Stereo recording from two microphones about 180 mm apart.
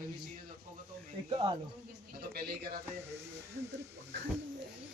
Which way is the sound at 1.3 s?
25° right (ahead or behind).